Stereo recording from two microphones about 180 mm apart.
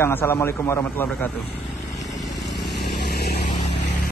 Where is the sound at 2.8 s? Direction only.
65° left (ahead or behind).